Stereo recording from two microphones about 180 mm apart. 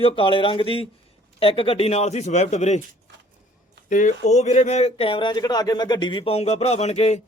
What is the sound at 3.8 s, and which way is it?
Speech, 45° left (ahead or behind).